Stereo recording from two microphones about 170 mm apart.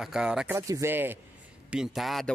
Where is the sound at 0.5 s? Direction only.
15° right (ahead or behind).